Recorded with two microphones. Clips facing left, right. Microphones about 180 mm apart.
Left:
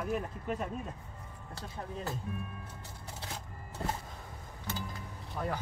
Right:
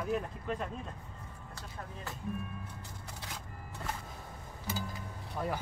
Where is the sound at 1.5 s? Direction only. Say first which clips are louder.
Left 6 dB; 35° left (ahead or behind).